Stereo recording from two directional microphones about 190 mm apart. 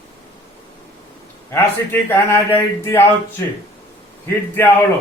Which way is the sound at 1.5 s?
10° left (ahead or behind).